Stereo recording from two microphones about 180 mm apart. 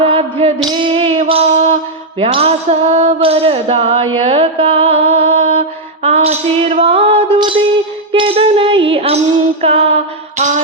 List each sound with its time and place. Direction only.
0.0 s music: 30° right (ahead or behind)
0.9 s a sound: 35° right (ahead or behind)
2.1 s music: 30° right (ahead or behind)